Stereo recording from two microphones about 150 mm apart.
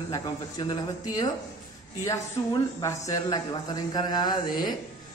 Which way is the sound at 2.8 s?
20° left (ahead or behind).